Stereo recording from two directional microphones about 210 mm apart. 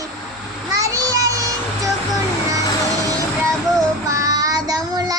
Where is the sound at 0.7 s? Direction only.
15° right (ahead or behind).